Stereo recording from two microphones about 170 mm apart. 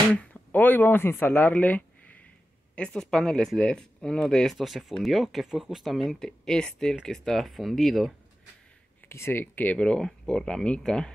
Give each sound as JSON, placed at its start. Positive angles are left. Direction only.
{"t": 0.1, "sound": "speech", "side_deg": 10}
{"t": 9.1, "sound": "speech", "side_deg": 15}